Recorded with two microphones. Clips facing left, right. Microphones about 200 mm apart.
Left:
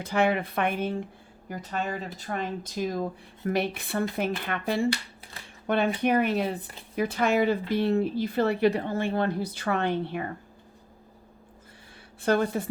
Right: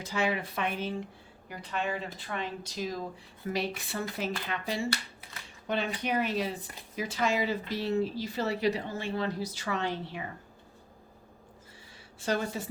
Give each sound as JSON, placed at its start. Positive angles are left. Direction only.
{"t": 0.0, "sound": "speech", "side_deg": 55}
{"t": 1.5, "sound": "speech", "side_deg": 45}
{"t": 12.2, "sound": "speech", "side_deg": 55}